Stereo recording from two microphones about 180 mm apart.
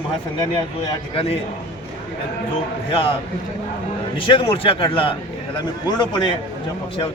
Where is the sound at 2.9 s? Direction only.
30° left (ahead or behind).